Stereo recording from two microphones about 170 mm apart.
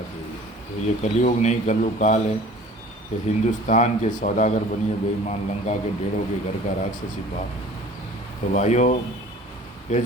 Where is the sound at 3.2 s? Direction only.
45° left (ahead or behind).